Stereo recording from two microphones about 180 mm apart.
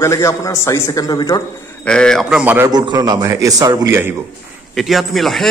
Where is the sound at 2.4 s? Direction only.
10° right (ahead or behind).